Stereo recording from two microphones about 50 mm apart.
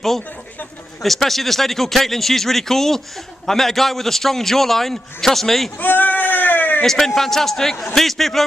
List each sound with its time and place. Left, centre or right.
1.0 s a man's voice: centre
5.8 s bleat: left
6.8 s a man's voice: centre